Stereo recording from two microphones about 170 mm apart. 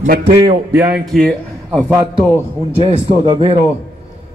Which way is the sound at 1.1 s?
Centre (ahead or behind).